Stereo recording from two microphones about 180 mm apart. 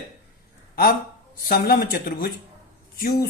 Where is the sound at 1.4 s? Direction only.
55° left (ahead or behind).